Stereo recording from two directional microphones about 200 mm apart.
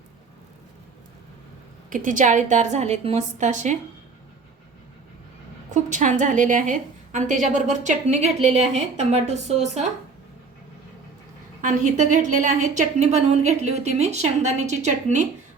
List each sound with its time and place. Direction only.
1.9 s a woman's voice: 40° right (ahead or behind)
5.7 s a woman's voice: 40° right (ahead or behind)
11.6 s a woman's voice: 40° right (ahead or behind)